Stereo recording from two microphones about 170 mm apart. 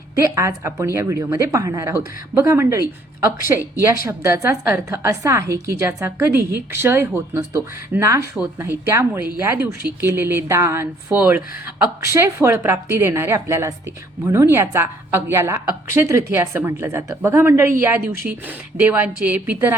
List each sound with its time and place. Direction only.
0.2 s speech: 20° right (ahead or behind)